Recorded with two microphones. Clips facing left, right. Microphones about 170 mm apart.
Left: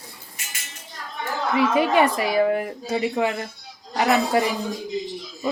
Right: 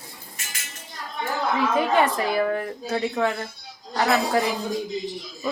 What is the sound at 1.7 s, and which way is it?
Speech, 10° left (ahead or behind).